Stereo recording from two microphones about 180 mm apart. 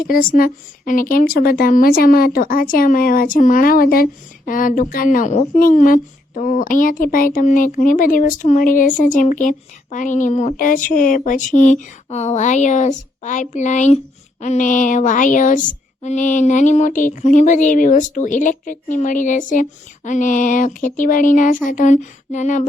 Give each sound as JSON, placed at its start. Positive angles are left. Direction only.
{"t": 0.1, "sound": "speech", "side_deg": 50}